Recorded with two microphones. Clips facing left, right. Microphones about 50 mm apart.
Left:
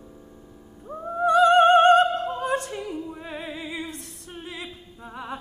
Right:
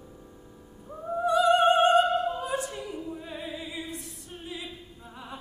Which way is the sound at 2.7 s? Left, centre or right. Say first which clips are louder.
Left 4 dB; left.